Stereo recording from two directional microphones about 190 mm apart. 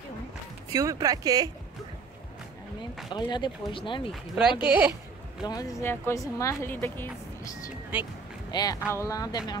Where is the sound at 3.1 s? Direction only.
25° left (ahead or behind).